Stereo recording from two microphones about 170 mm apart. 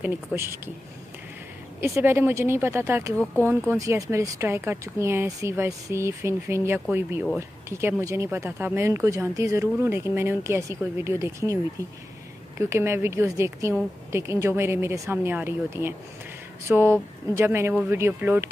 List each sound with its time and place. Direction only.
0.0 s speech: 15° right (ahead or behind)
1.8 s speech: 15° right (ahead or behind)
12.5 s speech: 15° right (ahead or behind)